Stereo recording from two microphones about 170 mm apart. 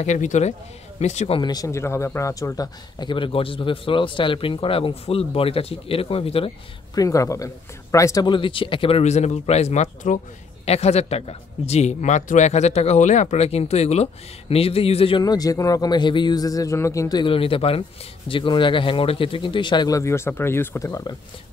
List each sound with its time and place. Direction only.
0.0 s speech: 45° left (ahead or behind)
1.4 s speech: 20° left (ahead or behind)
7.0 s a man's voice: 20° left (ahead or behind)